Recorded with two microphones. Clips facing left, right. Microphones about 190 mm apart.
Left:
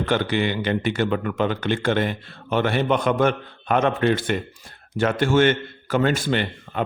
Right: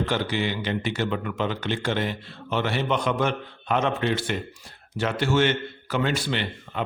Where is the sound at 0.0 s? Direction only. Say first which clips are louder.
Left 4 dB; 55° left (ahead or behind).